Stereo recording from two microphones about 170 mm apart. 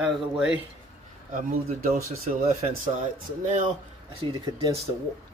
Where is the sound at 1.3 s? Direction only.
50° right (ahead or behind).